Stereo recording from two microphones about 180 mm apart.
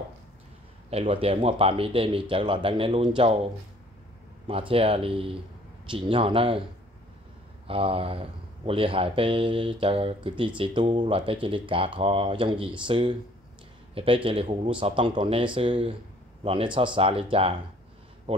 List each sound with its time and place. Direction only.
0.8 s speech: 30° right (ahead or behind)
4.5 s speech: 30° right (ahead or behind)
7.6 s speech: 30° right (ahead or behind)